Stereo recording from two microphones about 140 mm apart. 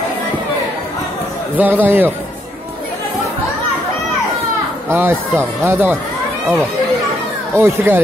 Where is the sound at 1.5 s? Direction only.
15° right (ahead or behind).